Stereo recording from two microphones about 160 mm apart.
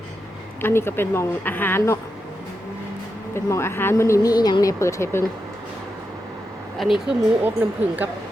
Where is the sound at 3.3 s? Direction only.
15° left (ahead or behind).